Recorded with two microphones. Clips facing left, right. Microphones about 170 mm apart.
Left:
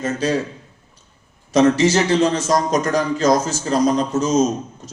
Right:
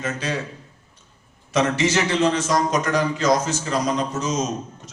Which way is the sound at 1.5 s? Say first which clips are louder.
Left 6 dB; 40° left (ahead or behind).